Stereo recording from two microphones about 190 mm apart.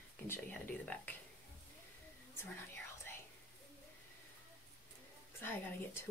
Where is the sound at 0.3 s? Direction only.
10° left (ahead or behind).